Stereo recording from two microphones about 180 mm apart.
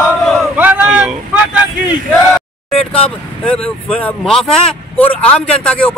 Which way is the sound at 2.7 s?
30° left (ahead or behind).